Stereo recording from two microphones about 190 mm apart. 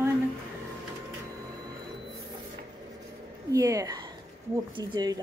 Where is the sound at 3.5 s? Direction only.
15° right (ahead or behind).